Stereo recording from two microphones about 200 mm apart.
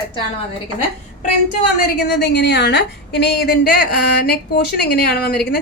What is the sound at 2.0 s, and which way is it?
A woman's voice, 55° left (ahead or behind).